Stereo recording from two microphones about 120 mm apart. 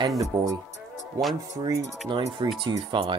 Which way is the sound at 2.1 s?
40° right (ahead or behind).